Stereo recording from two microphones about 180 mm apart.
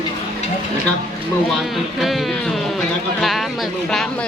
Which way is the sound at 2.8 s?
Centre (ahead or behind).